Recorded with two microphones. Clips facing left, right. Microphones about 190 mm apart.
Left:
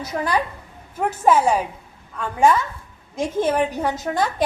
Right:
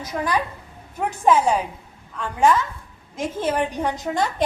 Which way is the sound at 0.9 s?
5° left (ahead or behind).